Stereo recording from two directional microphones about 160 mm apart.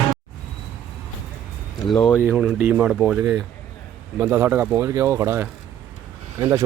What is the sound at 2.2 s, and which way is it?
Speech, 5° right (ahead or behind).